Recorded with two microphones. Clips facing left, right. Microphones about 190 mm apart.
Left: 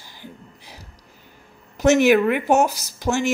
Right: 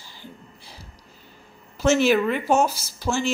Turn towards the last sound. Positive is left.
turn(degrees=15)  # may be behind; listen again after turning